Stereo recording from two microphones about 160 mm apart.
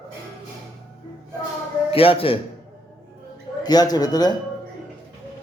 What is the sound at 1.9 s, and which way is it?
Speech, 35° left (ahead or behind).